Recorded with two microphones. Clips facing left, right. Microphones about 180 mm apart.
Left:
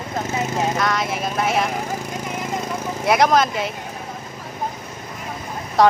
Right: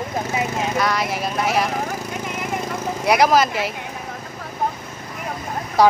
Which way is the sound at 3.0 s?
5° right (ahead or behind).